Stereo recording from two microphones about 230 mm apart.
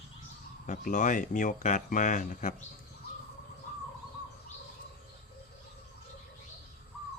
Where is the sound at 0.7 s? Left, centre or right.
Left.